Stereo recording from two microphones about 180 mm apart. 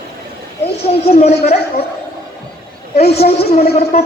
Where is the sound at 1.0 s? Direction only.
35° left (ahead or behind).